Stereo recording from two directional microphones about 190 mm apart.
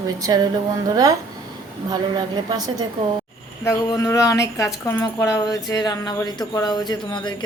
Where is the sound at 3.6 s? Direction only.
15° left (ahead or behind).